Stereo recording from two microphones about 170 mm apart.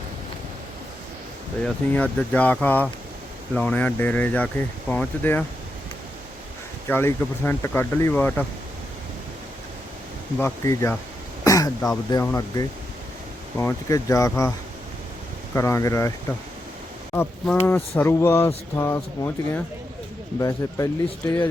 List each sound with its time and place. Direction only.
1.6 s speech: 5° left (ahead or behind)
6.8 s speech: 10° left (ahead or behind)
10.3 s speech: 15° left (ahead or behind)
11.4 s throat clearing: 20° left (ahead or behind)
12.1 s speech: 15° left (ahead or behind)
15.5 s speech: 15° left (ahead or behind)
17.2 s speech: 5° left (ahead or behind)